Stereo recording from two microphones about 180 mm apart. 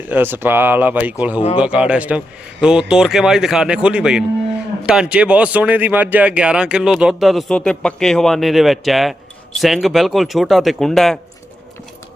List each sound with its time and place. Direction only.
0.1 s speech: 10° right (ahead or behind)